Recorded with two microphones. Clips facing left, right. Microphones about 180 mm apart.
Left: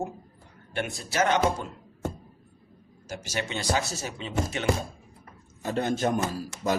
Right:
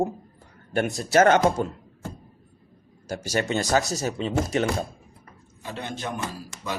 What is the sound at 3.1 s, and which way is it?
Speech, 45° right (ahead or behind).